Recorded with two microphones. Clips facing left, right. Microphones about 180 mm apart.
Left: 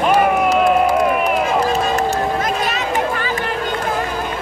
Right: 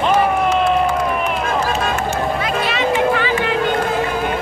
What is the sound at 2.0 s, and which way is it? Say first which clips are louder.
Music: left 2 dB; 40° left (ahead or behind).